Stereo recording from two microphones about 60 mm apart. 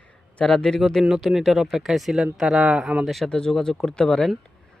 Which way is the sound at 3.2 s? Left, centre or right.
Centre.